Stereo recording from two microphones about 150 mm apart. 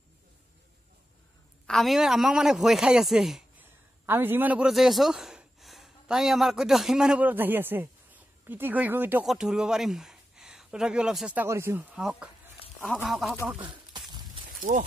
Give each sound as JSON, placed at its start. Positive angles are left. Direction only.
{"t": 1.7, "sound": "a man's voice", "side_deg": 0}
{"t": 4.0, "sound": "speech", "side_deg": -15}
{"t": 9.2, "sound": "speech", "side_deg": 0}
{"t": 11.4, "sound": "a man's voice", "side_deg": -15}
{"t": 13.6, "sound": "a sound", "side_deg": -30}
{"t": 14.4, "sound": "a sound", "side_deg": -65}